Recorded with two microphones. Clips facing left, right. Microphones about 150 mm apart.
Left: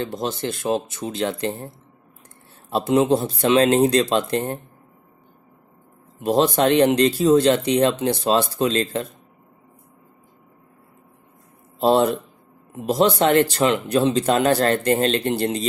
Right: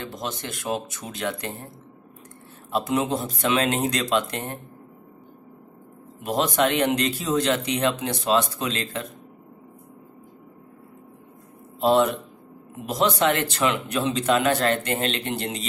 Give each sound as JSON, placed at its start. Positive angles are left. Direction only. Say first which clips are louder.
{"t": 0.0, "sound": "speech", "louder": "left 7 dB", "side_deg": 30}
{"t": 2.7, "sound": "speech", "louder": "left 6 dB", "side_deg": 30}
{"t": 6.2, "sound": "speech", "louder": "left 5 dB", "side_deg": 30}
{"t": 11.8, "sound": "speech", "louder": "left 2 dB", "side_deg": 35}